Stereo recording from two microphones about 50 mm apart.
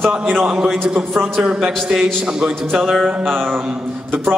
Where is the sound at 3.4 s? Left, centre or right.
Right.